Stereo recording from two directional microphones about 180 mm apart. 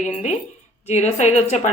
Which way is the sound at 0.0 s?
40° left (ahead or behind).